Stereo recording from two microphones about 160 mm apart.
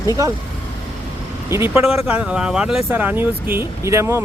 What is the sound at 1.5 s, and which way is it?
Speech, 15° right (ahead or behind).